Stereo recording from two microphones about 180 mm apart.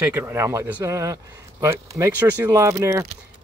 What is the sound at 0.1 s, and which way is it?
Speech, 15° right (ahead or behind).